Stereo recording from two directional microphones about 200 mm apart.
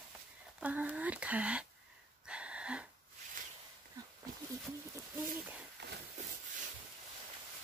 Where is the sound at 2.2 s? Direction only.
5° right (ahead or behind).